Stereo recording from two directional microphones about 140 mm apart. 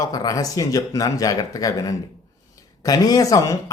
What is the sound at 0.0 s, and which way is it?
Speech, 25° left (ahead or behind).